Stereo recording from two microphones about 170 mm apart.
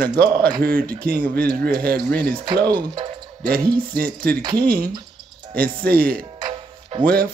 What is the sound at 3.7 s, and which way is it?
Speech, 60° right (ahead or behind).